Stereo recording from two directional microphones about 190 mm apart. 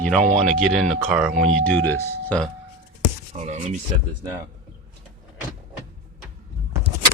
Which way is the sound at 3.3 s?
40° right (ahead or behind).